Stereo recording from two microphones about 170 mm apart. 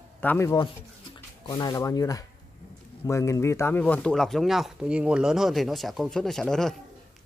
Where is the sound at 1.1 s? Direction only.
25° left (ahead or behind).